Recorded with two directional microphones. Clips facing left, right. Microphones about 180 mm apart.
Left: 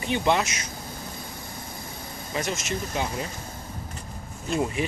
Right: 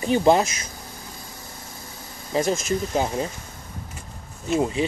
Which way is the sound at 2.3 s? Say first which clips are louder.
Right 7 dB; 35° right (ahead or behind).